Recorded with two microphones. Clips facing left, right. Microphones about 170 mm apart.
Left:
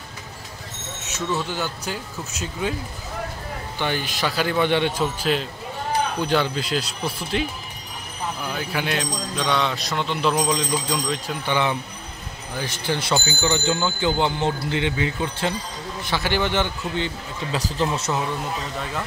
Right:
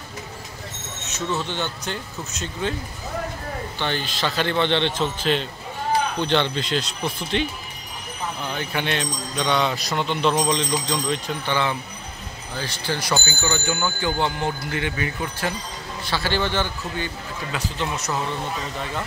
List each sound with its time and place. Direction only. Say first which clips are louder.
1.5 s a man's voice: even; 5° left (ahead or behind)
3.7 s a man's voice: left 3 dB; 10° left (ahead or behind)
12.5 s a man's voice: left 2 dB; 20° left (ahead or behind)